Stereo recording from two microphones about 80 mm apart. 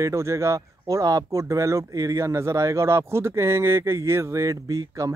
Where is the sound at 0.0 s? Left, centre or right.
Right.